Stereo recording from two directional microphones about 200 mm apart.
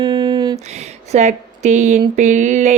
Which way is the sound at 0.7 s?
35° right (ahead or behind).